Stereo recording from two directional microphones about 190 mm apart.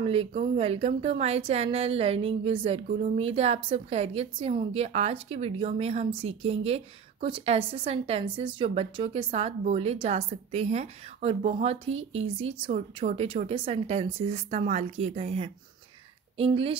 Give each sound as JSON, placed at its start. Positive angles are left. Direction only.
{"t": 0.0, "sound": "a woman's voice", "side_deg": -30}
{"t": 11.9, "sound": "speech", "side_deg": -90}
{"t": 12.4, "sound": "a woman's voice", "side_deg": -30}